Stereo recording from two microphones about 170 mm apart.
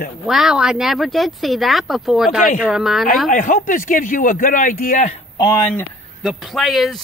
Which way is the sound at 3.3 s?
50° left (ahead or behind).